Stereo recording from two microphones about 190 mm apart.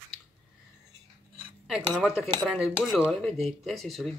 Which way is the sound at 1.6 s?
Centre (ahead or behind).